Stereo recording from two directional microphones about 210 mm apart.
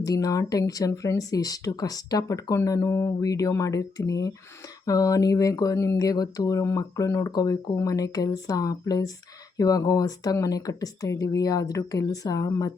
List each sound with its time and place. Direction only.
0.0 s speech: 15° left (ahead or behind)